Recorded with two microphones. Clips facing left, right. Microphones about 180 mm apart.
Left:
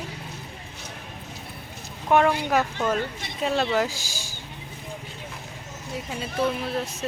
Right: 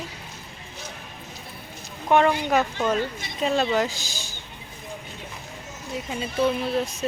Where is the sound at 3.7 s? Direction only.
10° left (ahead or behind).